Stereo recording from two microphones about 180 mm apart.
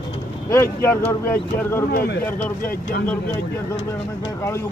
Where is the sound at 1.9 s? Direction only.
55° left (ahead or behind).